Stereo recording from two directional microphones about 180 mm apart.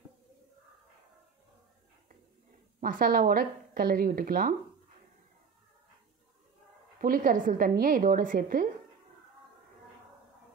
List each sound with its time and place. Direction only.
2.8 s a woman's voice: 50° right (ahead or behind)
7.0 s a woman's voice: 50° right (ahead or behind)